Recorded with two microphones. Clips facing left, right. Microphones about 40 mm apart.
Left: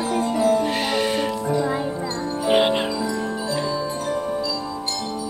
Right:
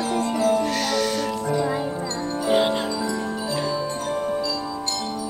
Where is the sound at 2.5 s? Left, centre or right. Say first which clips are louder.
Left 2 dB; left.